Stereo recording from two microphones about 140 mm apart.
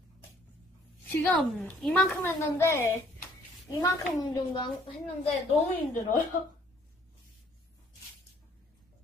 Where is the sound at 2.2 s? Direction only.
20° left (ahead or behind).